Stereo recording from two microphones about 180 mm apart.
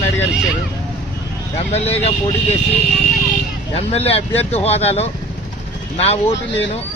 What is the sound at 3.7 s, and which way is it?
Speech, 35° left (ahead or behind).